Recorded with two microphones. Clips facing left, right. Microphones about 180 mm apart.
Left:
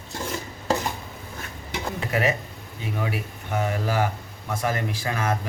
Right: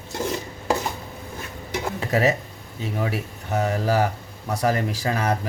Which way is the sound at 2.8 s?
35° right (ahead or behind).